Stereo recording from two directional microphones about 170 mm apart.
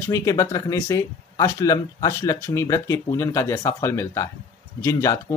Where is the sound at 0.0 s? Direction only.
20° left (ahead or behind).